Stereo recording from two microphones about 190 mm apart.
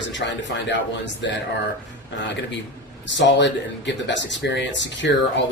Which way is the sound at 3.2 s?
70° left (ahead or behind).